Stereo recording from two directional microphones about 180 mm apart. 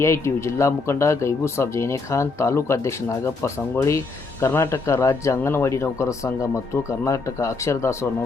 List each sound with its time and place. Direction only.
0.0 s speech: 15° left (ahead or behind)